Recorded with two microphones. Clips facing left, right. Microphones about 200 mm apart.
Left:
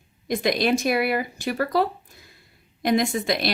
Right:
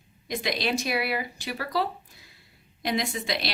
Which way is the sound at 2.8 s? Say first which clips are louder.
Left 7 dB; 50° left (ahead or behind).